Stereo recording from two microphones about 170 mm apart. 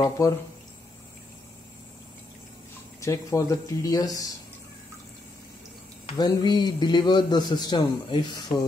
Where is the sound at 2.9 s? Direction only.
20° left (ahead or behind).